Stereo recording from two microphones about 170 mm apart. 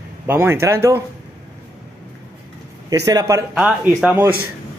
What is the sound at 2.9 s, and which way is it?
Speech, 20° right (ahead or behind).